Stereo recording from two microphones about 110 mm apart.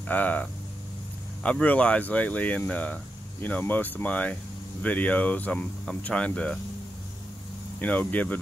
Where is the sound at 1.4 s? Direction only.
10° left (ahead or behind).